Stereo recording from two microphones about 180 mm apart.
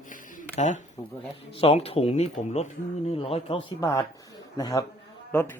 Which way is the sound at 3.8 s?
15° left (ahead or behind).